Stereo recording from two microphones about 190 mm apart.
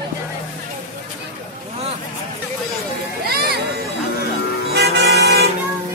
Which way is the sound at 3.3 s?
55° right (ahead or behind).